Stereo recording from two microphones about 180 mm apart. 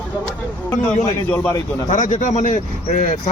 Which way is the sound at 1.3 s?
10° left (ahead or behind).